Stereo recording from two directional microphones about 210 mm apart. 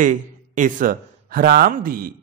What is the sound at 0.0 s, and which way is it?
A man's voice, 40° right (ahead or behind).